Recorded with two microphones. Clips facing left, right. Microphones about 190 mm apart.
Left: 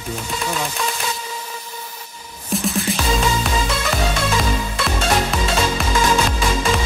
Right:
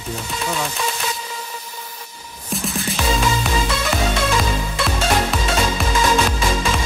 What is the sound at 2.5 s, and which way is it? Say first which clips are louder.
Music: left 3 dB; centre (ahead or behind).